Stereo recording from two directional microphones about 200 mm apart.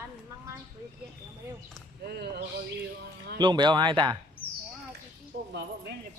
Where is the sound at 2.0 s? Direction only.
55° right (ahead or behind).